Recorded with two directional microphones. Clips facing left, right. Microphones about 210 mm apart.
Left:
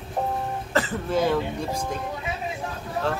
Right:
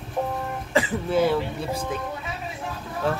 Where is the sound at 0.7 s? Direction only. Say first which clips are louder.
Right 2 dB; 10° right (ahead or behind).